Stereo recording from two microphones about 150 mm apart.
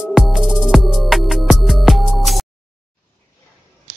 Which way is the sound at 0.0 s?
5° right (ahead or behind).